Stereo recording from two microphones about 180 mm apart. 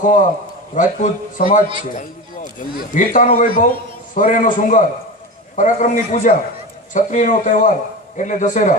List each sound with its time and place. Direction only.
0.0 s speech: 45° left (ahead or behind)
2.7 s speech: 50° left (ahead or behind)